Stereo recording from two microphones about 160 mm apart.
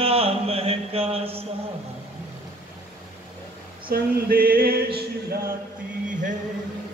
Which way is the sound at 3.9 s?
70° right (ahead or behind).